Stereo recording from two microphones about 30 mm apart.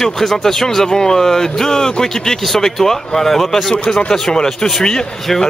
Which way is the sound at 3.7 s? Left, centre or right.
Left.